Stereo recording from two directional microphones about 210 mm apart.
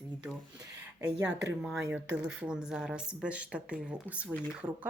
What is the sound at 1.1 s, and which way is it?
Speech, 55° right (ahead or behind).